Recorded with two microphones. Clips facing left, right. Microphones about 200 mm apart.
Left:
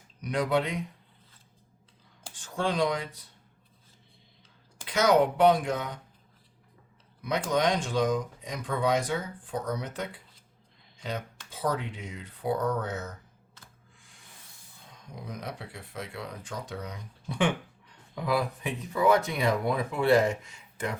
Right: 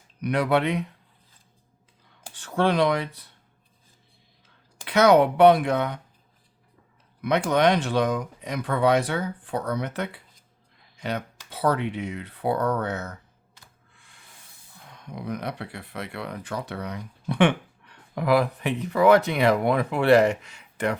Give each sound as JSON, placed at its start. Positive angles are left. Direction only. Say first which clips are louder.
{"t": 0.2, "sound": "speech", "louder": "right 4 dB", "side_deg": -65}
{"t": 2.3, "sound": "speech", "louder": "right 7 dB", "side_deg": -65}
{"t": 4.9, "sound": "speech", "louder": "right 5 dB", "side_deg": -65}
{"t": 7.2, "sound": "speech", "louder": "right 6 dB", "side_deg": -65}
{"t": 13.9, "sound": "snake", "louder": "right 1 dB", "side_deg": -65}
{"t": 14.8, "sound": "speech", "louder": "right 7 dB", "side_deg": -65}